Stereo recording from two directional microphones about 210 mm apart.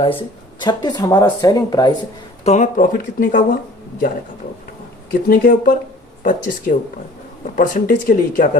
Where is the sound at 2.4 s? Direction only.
30° left (ahead or behind).